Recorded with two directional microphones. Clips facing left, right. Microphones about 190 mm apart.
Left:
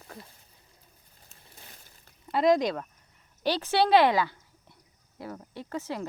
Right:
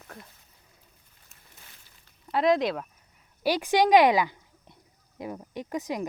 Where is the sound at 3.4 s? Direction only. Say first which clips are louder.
Right 2 dB; 10° right (ahead or behind).